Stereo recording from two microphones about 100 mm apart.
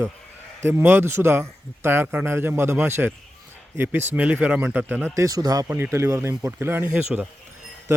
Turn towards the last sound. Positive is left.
turn(degrees=-10)  # may be behind; listen again after turning